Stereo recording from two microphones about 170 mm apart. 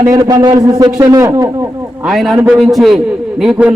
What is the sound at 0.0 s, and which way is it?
A man's voice, 20° right (ahead or behind).